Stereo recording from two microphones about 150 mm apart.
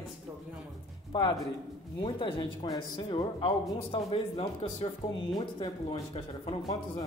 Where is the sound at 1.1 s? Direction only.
30° left (ahead or behind).